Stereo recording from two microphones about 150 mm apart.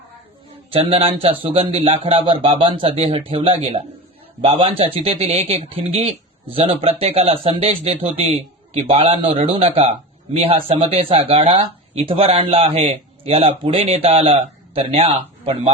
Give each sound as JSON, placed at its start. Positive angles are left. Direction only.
{"t": 0.7, "sound": "speech", "side_deg": -40}